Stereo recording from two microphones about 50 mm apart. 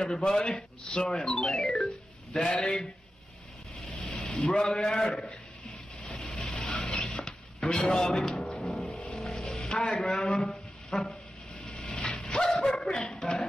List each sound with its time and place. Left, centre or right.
0.2 s a man's voice: centre
1.5 s synthesizer: centre
2.3 s a man's voice: centre
3.8 s vehicle: centre
4.4 s a man's voice: centre
6.4 s a sound: centre
6.7 s music: centre
9.1 s vehicle: centre
9.9 s a man's voice: centre
10.4 s a sound: centre
11.8 s dog: centre